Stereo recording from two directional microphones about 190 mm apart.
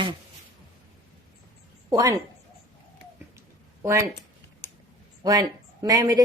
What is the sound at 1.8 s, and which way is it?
Speech, 15° right (ahead or behind).